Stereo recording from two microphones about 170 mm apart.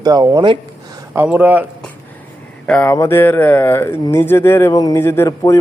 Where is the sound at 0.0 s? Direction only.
20° right (ahead or behind).